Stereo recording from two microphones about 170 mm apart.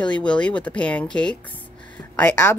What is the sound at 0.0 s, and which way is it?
Speech, 5° left (ahead or behind).